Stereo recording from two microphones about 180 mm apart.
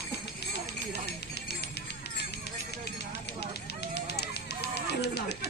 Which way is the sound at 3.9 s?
65° left (ahead or behind).